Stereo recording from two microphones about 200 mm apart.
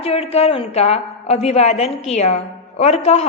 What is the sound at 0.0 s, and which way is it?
A woman's voice, 30° left (ahead or behind).